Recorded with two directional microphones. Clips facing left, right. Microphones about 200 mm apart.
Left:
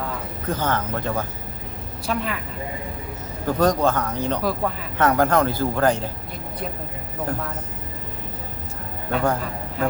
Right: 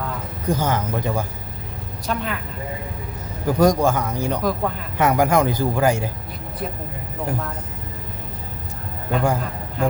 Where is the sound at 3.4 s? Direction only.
10° right (ahead or behind).